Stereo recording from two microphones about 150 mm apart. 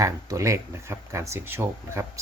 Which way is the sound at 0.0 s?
20° right (ahead or behind).